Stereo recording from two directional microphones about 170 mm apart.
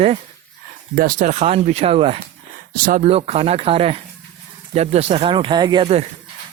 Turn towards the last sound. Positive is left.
turn(degrees=-35)  # may be behind; listen again after turning